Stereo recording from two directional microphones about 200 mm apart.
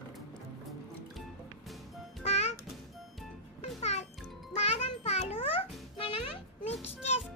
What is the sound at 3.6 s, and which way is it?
Music, 35° left (ahead or behind).